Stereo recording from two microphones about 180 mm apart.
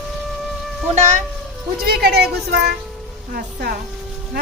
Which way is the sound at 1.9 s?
65° right (ahead or behind).